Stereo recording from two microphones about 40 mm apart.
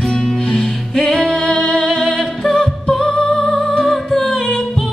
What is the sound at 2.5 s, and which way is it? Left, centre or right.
Music, centre.